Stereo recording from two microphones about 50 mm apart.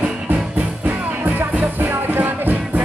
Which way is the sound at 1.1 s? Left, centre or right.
Right.